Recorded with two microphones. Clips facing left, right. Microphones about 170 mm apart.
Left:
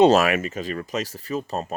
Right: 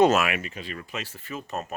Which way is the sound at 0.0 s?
35° left (ahead or behind).